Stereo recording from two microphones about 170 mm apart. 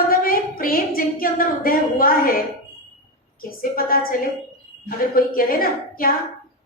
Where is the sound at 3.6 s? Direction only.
60° left (ahead or behind).